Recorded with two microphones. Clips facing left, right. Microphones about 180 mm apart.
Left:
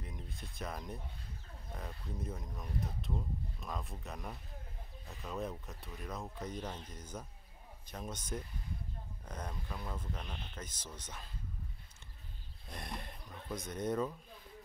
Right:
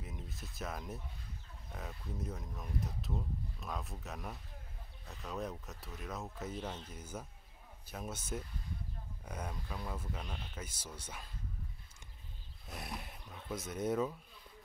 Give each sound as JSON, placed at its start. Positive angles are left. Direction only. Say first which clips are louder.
{"t": 0.0, "sound": "speech", "louder": "even", "side_deg": -5}
{"t": 12.6, "sound": "speech", "louder": "even", "side_deg": -5}